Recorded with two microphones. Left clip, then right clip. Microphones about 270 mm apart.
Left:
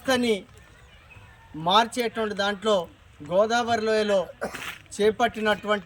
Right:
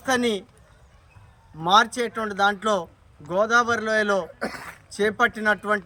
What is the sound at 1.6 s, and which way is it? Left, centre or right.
A man's voice, right.